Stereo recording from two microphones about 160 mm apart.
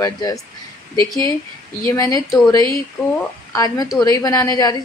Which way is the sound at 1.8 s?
20° left (ahead or behind).